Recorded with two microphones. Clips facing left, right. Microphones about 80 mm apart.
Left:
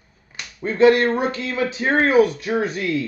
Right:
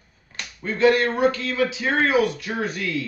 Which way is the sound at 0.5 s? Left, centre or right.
Left.